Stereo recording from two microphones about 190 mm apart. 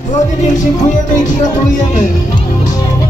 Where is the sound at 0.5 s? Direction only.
40° left (ahead or behind).